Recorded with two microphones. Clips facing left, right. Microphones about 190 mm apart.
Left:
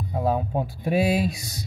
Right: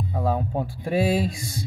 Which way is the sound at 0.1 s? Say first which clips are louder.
Left 2 dB; 15° left (ahead or behind).